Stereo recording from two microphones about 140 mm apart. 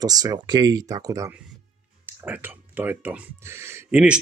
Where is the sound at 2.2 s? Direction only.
10° right (ahead or behind).